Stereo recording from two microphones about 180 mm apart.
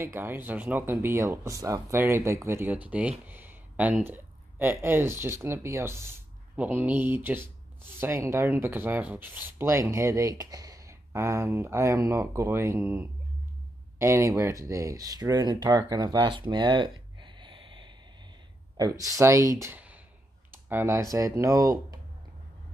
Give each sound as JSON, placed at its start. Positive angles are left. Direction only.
{"t": 0.0, "sound": "speech", "side_deg": -15}